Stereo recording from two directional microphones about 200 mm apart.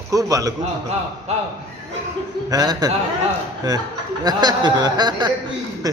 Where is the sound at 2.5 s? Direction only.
20° right (ahead or behind).